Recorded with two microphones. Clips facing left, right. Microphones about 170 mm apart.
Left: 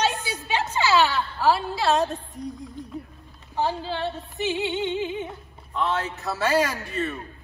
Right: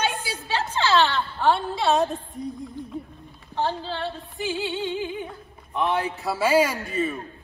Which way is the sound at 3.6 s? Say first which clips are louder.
Left 1 dB; 10° left (ahead or behind).